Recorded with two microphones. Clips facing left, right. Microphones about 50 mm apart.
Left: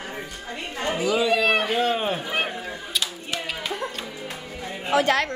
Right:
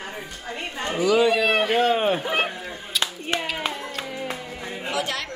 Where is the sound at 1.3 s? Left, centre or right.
Centre.